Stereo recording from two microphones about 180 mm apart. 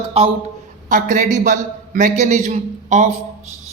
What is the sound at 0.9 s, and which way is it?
A man's voice, 45° right (ahead or behind).